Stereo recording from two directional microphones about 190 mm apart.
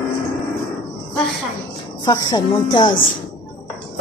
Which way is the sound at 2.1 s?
20° left (ahead or behind).